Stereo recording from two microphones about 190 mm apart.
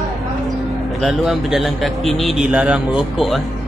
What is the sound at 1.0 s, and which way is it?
A man's voice, centre (ahead or behind).